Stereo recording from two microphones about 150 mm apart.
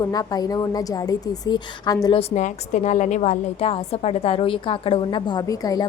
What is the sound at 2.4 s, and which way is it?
A woman's voice, 55° left (ahead or behind).